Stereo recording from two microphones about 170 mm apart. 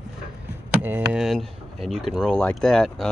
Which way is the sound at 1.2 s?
Centre (ahead or behind).